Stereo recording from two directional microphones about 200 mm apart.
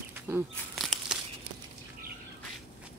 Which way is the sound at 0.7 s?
Centre (ahead or behind).